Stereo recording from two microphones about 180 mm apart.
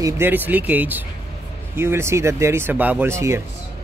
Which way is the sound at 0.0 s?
10° right (ahead or behind).